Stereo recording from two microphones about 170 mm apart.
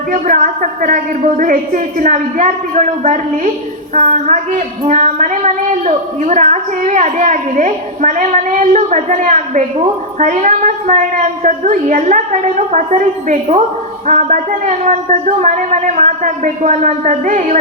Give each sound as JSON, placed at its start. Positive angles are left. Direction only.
{"t": 0.1, "sound": "a woman's voice", "side_deg": -50}